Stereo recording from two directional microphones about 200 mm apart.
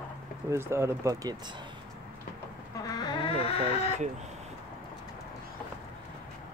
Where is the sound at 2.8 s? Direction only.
20° left (ahead or behind).